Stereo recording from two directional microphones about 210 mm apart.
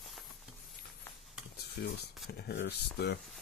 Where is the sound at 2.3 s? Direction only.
50° left (ahead or behind).